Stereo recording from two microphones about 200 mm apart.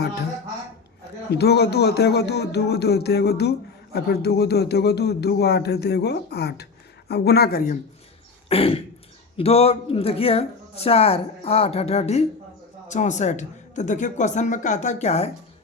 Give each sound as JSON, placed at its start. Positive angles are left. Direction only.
{"t": 1.3, "sound": "speech", "side_deg": 55}
{"t": 8.4, "sound": "throat clearing", "side_deg": 30}
{"t": 9.4, "sound": "a woman's voice", "side_deg": 30}